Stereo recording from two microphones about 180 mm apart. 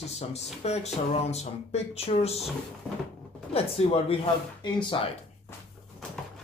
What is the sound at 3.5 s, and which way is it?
Speech, 30° left (ahead or behind).